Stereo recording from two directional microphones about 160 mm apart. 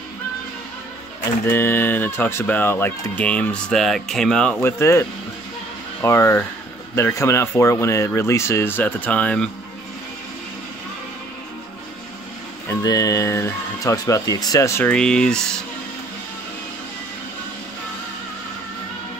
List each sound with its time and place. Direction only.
1.4 s speech: 15° left (ahead or behind)
12.6 s speech: 20° left (ahead or behind); by 15.4 s 5° left (ahead or behind)